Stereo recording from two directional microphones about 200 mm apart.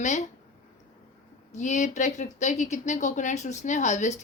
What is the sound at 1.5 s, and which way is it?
Speech, 35° left (ahead or behind).